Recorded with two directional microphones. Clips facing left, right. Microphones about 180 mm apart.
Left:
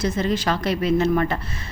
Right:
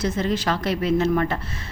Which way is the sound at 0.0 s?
15° left (ahead or behind).